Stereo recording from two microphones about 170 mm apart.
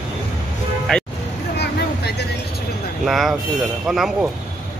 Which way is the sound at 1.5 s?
75° left (ahead or behind).